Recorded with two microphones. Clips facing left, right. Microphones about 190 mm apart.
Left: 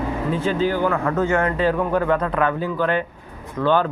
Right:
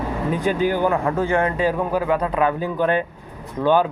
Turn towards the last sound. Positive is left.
turn(degrees=-10)  # may be behind; listen again after turning